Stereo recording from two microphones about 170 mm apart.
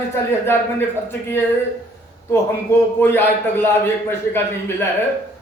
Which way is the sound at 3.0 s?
10° left (ahead or behind).